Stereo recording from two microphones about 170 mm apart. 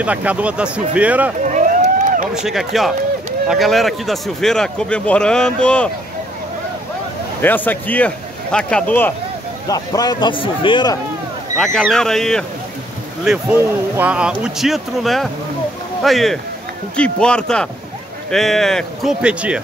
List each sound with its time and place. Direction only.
0.0 s speech: 10° right (ahead or behind)
1.4 s a sound: 45° right (ahead or behind)
2.3 s a man's voice: centre (ahead or behind)
7.4 s a man's voice: 10° left (ahead or behind)
9.7 s a man's voice: 20° left (ahead or behind)
11.5 s a man's voice: 5° left (ahead or behind)